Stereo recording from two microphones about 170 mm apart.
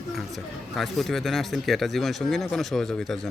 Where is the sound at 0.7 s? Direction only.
Centre (ahead or behind).